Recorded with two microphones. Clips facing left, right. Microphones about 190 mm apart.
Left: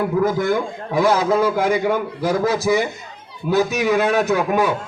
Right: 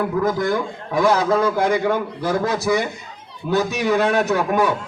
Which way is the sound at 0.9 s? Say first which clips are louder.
Left 1 dB; 10° left (ahead or behind).